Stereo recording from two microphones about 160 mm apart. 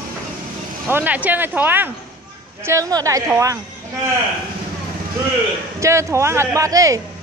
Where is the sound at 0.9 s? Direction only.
10° right (ahead or behind).